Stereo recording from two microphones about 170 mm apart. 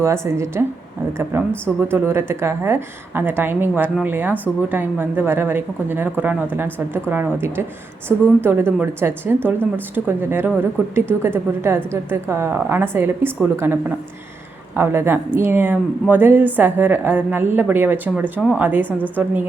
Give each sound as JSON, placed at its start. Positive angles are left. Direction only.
{"t": 0.0, "sound": "a woman's voice", "side_deg": -15}